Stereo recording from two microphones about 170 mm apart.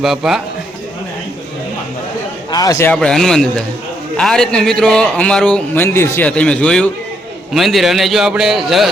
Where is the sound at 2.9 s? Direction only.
5° left (ahead or behind).